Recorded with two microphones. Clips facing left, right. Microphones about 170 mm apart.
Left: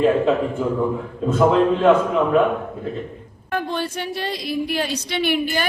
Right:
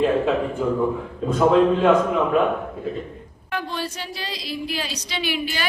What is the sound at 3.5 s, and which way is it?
A woman's voice, 55° left (ahead or behind).